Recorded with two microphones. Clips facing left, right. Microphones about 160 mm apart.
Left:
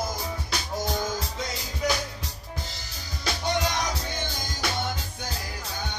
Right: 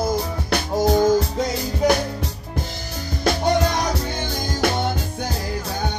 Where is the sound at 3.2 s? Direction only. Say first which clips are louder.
Right 9 dB; 55° right (ahead or behind).